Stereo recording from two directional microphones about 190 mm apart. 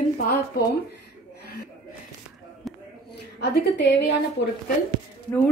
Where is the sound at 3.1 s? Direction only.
60° left (ahead or behind).